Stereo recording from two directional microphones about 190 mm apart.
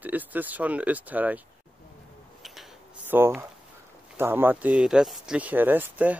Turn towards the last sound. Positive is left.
turn(degrees=-10)  # may be behind; listen again after turning